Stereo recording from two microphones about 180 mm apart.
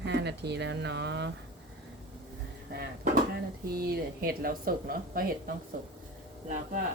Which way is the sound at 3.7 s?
55° right (ahead or behind).